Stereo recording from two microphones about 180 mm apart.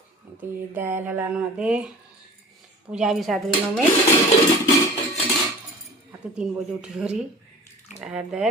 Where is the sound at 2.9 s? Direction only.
5° right (ahead or behind).